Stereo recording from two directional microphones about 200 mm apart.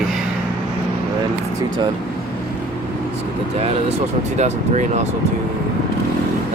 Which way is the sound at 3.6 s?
30° right (ahead or behind).